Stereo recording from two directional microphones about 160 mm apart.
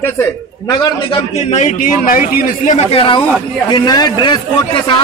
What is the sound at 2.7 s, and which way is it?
A man's voice, 35° left (ahead or behind).